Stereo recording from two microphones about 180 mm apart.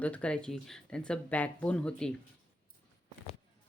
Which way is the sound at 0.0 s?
5° left (ahead or behind).